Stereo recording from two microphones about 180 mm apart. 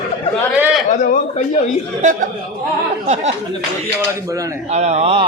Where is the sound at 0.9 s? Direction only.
45° left (ahead or behind).